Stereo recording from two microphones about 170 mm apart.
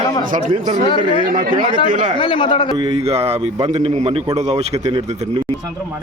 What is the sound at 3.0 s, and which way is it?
A man's voice, 35° right (ahead or behind).